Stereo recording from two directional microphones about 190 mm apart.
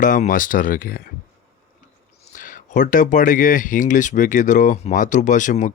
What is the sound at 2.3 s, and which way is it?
Speech, 45° left (ahead or behind).